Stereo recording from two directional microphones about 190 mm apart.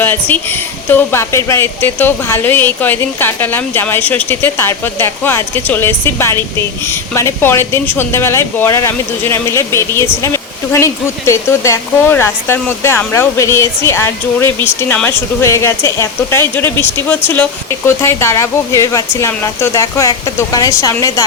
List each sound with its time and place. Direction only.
0.0 s speech: 10° left (ahead or behind)